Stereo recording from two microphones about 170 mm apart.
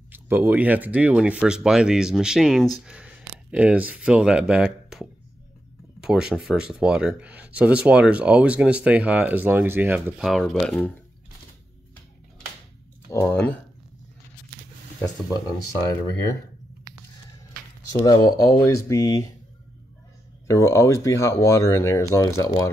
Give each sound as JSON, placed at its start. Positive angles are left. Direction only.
{"t": 0.1, "sound": "speech", "side_deg": -10}
{"t": 6.0, "sound": "speech", "side_deg": -5}
{"t": 13.1, "sound": "speech", "side_deg": 15}
{"t": 17.9, "sound": "speech", "side_deg": 20}
{"t": 20.4, "sound": "speech", "side_deg": 15}